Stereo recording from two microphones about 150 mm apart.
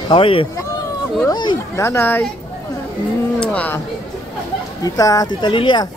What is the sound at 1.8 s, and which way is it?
Speech, 15° left (ahead or behind).